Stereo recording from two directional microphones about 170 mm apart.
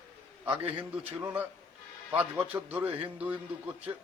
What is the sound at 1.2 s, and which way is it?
A man's voice, 10° right (ahead or behind).